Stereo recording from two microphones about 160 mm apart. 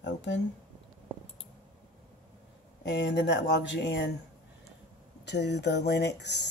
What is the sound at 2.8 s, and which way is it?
Speech, 90° left.